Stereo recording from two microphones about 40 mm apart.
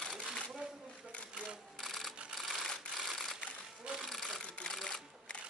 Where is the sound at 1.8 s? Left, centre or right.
Centre.